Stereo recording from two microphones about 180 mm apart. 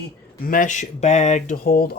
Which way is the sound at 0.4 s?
50° left (ahead or behind).